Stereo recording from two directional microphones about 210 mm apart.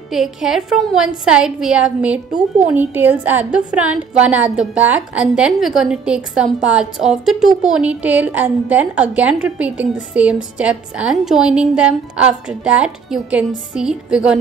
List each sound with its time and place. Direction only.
0.1 s a woman's voice: centre (ahead or behind)